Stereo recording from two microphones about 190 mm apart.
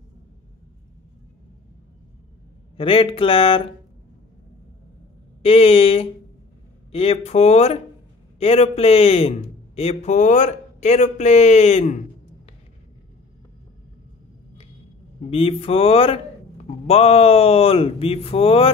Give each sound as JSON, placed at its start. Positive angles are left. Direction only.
{"t": 2.8, "sound": "speech", "side_deg": 30}
{"t": 5.4, "sound": "a man's voice", "side_deg": 30}
{"t": 15.2, "sound": "a man's voice", "side_deg": 30}